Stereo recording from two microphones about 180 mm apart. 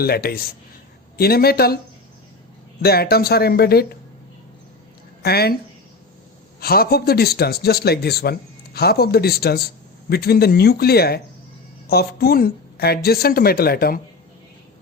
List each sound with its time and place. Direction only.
0.0 s speech: 60° left (ahead or behind)
2.8 s speech: 60° left (ahead or behind)
5.2 s speech: 60° left (ahead or behind)
6.6 s speech: 55° left (ahead or behind)